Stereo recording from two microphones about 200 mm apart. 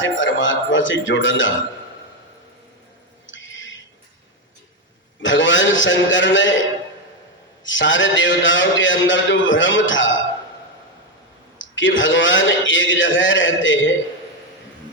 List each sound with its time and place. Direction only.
0.0 s a man's voice: 70° left (ahead or behind)
3.2 s a sound: 70° left (ahead or behind)
5.2 s a man's voice: 70° left (ahead or behind)
11.5 s a man's voice: 70° left (ahead or behind)